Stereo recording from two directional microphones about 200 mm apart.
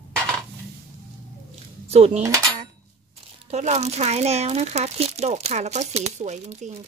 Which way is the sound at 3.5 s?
35° right (ahead or behind).